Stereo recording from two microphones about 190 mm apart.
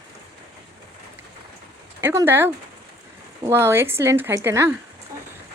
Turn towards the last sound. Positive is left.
turn(degrees=-10)  # may be behind; listen again after turning